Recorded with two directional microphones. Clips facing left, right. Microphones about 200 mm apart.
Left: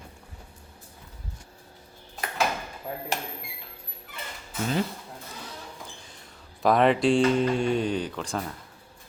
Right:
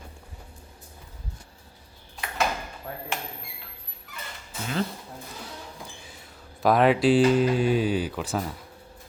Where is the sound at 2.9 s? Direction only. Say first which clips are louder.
Left 3 dB; 15° left (ahead or behind).